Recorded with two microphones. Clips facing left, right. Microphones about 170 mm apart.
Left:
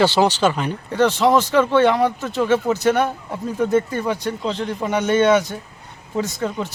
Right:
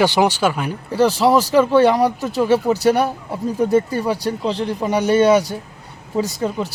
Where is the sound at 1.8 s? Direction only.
35° right (ahead or behind).